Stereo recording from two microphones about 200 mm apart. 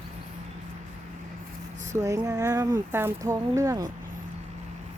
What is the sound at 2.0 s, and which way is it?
Speech, 15° right (ahead or behind).